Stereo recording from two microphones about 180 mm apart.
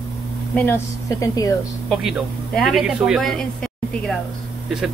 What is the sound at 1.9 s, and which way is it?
Speech, centre (ahead or behind).